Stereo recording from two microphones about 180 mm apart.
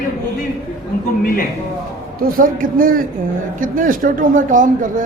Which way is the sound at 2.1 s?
50° right (ahead or behind).